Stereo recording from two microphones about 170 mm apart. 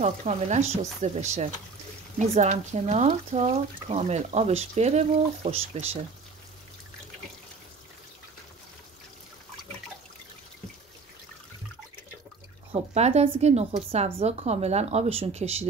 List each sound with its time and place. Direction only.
0.0 s speech: 40° right (ahead or behind)
12.7 s speech: 40° right (ahead or behind)